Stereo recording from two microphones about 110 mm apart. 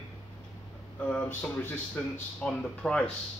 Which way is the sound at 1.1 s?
10° left (ahead or behind).